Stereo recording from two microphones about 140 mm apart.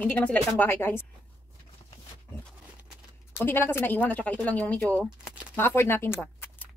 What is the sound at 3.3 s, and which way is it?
Speech, 15° left (ahead or behind).